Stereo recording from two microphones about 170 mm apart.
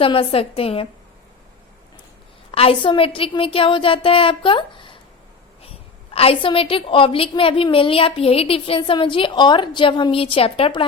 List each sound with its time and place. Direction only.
0.0 s a woman's voice: 35° left (ahead or behind)
2.5 s a woman's voice: 30° left (ahead or behind)